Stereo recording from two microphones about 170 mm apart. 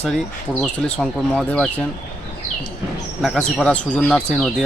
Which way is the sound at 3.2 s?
5° left (ahead or behind).